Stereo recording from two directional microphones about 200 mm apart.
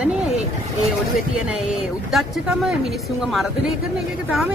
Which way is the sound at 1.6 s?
Centre (ahead or behind).